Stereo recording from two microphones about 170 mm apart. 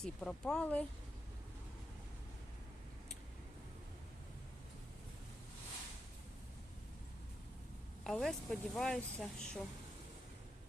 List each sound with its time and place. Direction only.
0.0 s speech: 5° left (ahead or behind)
8.0 s speech: 5° left (ahead or behind)